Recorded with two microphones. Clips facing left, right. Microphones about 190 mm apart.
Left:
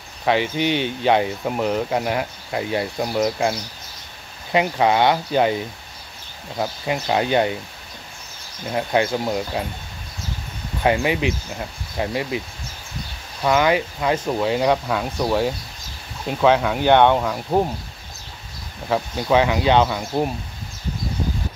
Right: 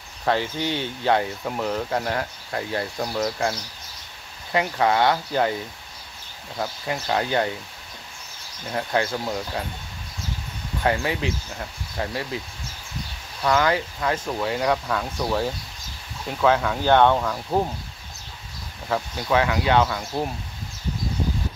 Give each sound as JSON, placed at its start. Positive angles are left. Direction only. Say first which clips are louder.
{"t": 0.2, "sound": "speech", "louder": "left 4 dB", "side_deg": 20}
{"t": 8.6, "sound": "speech", "louder": "left 4 dB", "side_deg": 20}
{"t": 10.8, "sound": "speech", "louder": "left 4 dB", "side_deg": 15}
{"t": 13.4, "sound": "speech", "louder": "left 3 dB", "side_deg": 15}
{"t": 18.9, "sound": "speech", "louder": "left 4 dB", "side_deg": 20}